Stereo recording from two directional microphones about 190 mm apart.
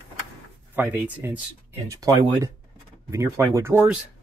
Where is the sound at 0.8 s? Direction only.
10° right (ahead or behind).